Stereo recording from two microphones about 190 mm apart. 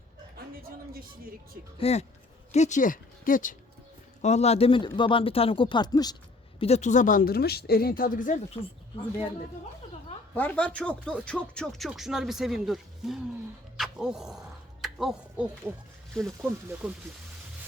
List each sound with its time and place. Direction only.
0.6 s speech: 50° right (ahead or behind)
1.8 s speech: 35° left (ahead or behind)
6.6 s speech: 35° left (ahead or behind)
10.3 s speech: 10° left (ahead or behind)
13.7 s a sound: centre (ahead or behind)
16.1 s speech: centre (ahead or behind)